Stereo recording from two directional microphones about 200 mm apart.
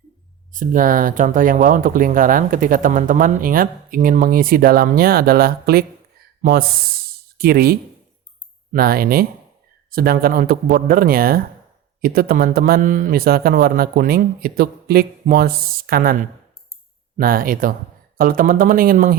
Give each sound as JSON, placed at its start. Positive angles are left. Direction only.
{"t": 0.5, "sound": "speech", "side_deg": -40}